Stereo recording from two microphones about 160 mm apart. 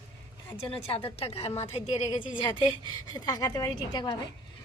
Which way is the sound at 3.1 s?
25° left (ahead or behind).